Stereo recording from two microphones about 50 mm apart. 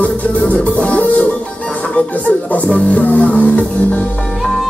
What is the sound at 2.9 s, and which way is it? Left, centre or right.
Music, left.